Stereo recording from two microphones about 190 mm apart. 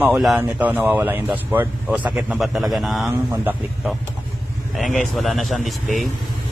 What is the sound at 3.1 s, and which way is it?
Speech, 15° right (ahead or behind).